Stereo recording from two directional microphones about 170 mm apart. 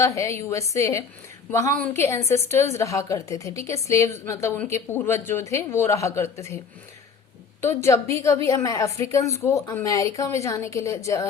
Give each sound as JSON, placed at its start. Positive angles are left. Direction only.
{"t": 0.0, "sound": "a woman's voice", "side_deg": 15}
{"t": 7.6, "sound": "a woman's voice", "side_deg": 15}